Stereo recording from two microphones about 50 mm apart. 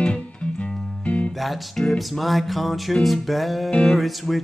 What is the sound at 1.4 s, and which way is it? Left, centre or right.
Speech, centre.